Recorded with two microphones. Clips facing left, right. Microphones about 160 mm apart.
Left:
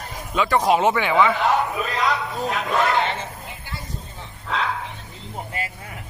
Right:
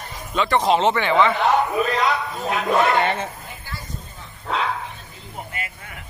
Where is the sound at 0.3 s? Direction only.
10° left (ahead or behind).